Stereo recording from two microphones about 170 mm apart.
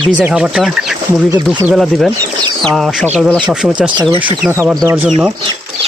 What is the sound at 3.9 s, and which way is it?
Speech, 30° right (ahead or behind).